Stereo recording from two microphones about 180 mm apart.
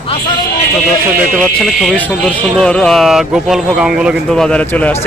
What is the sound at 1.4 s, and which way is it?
Speech, centre (ahead or behind).